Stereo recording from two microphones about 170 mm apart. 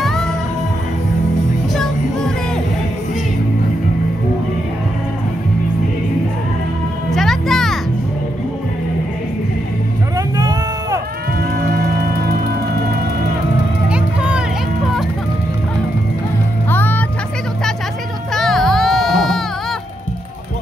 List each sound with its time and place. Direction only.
1.7 s music: 5° left (ahead or behind)
7.1 s music: centre (ahead or behind)
10.1 s a sound: 20° right (ahead or behind)
11.5 s music: 60° right (ahead or behind)
13.8 s music: 5° right (ahead or behind)
16.7 s music: 10° left (ahead or behind)
18.3 s music: centre (ahead or behind)